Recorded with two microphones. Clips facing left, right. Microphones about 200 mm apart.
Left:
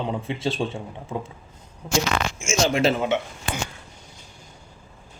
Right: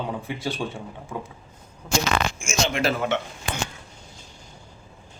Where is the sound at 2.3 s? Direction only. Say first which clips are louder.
Left 4 dB; 25° left (ahead or behind).